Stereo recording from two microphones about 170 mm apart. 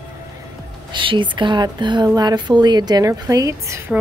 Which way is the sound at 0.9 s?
30° right (ahead or behind).